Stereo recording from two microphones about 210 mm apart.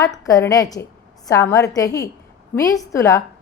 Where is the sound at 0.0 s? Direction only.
15° left (ahead or behind).